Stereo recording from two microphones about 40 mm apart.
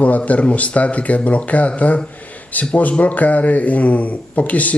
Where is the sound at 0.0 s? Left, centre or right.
Left.